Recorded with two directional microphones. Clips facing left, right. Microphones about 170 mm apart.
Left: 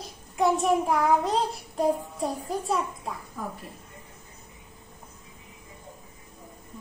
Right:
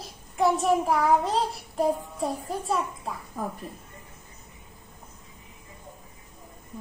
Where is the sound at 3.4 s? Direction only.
45° right (ahead or behind).